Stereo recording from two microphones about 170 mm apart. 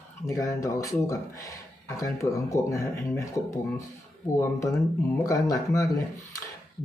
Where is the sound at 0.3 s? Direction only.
20° left (ahead or behind).